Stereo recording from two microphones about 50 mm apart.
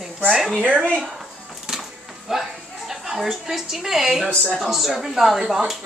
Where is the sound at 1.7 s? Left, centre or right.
Centre.